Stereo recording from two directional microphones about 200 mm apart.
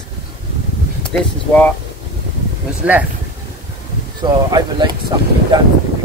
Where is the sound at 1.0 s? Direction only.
5° left (ahead or behind).